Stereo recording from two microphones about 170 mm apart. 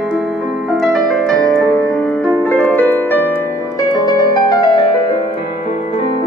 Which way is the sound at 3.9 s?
25° left (ahead or behind).